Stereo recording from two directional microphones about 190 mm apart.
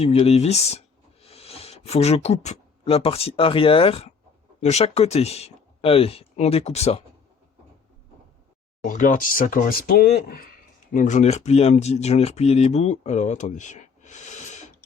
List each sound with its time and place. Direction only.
0.0 s speech: 35° left (ahead or behind)
8.9 s speech: 45° left (ahead or behind)
10.9 s speech: 40° left (ahead or behind)